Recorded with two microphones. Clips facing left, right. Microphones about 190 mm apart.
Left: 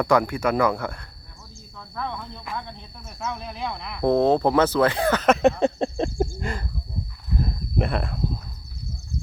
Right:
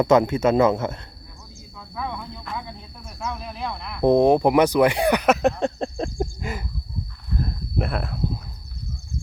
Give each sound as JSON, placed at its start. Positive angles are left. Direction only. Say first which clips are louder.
{"t": 0.0, "sound": "a man's voice", "louder": "right 4 dB", "side_deg": -20}
{"t": 1.8, "sound": "speech", "louder": "right 1 dB", "side_deg": -5}
{"t": 3.2, "sound": "a sound", "louder": "even", "side_deg": 0}
{"t": 4.0, "sound": "speech", "louder": "right 3 dB", "side_deg": -15}
{"t": 5.4, "sound": "a sound", "louder": "left 2 dB", "side_deg": 0}
{"t": 7.3, "sound": "cricket", "louder": "left 1 dB", "side_deg": 0}